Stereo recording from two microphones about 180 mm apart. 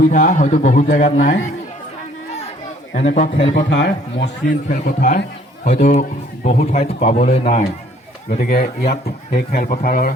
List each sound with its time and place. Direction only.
0.0 s a man's voice: 45° left (ahead or behind)
2.9 s a man's voice: 40° left (ahead or behind)
3.5 s a man's voice: 80° left
4.7 s a man's voice: 45° left (ahead or behind)
8.4 s a man's voice: 60° left (ahead or behind)